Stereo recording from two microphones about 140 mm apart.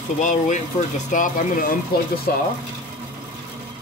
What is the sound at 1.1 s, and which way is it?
Speech, 75° left (ahead or behind).